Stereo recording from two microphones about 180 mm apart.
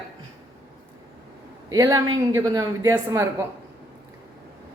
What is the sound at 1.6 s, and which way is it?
A woman's voice, 20° right (ahead or behind).